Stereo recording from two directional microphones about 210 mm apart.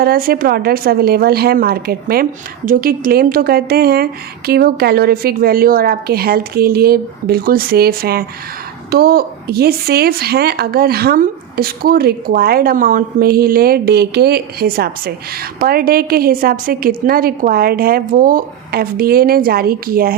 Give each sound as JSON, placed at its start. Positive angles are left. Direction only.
{"t": 0.0, "sound": "speech", "side_deg": -45}